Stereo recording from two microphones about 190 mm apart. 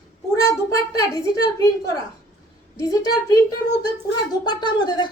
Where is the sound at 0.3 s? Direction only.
20° left (ahead or behind).